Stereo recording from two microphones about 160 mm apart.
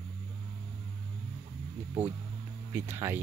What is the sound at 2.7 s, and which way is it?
Speech, 15° right (ahead or behind).